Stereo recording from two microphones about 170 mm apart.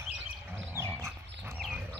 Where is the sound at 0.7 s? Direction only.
15° right (ahead or behind).